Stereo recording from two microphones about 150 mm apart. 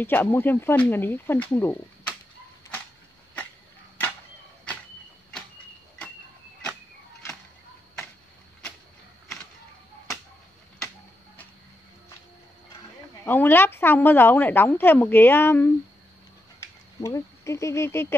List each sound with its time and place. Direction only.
0.0 s a woman's voice: 15° left (ahead or behind)
13.2 s a woman's voice: 15° left (ahead or behind)
16.5 s a sound: 20° left (ahead or behind)